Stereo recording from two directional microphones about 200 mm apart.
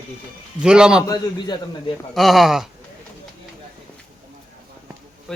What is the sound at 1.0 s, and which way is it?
Speech, 20° left (ahead or behind).